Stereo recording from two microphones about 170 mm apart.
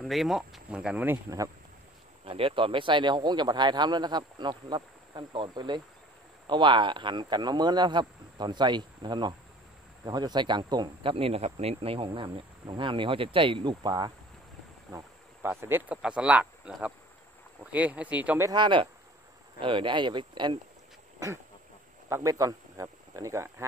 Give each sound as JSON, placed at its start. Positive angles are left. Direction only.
{"t": 0.0, "sound": "speech", "side_deg": 0}
{"t": 2.2, "sound": "speech", "side_deg": -30}
{"t": 14.9, "sound": "insect", "side_deg": -15}
{"t": 17.6, "sound": "speech", "side_deg": -10}
{"t": 18.5, "sound": "speech", "side_deg": -30}
{"t": 22.1, "sound": "speech", "side_deg": -20}